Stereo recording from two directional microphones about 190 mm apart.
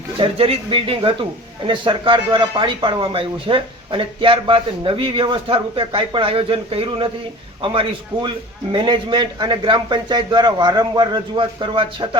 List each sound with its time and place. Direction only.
0.2 s speech: 30° right (ahead or behind)